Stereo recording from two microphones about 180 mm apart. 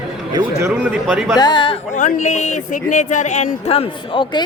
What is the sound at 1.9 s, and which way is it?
Speech, 40° left (ahead or behind).